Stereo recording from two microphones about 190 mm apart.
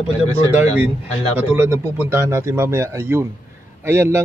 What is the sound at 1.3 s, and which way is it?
Speech, 10° right (ahead or behind).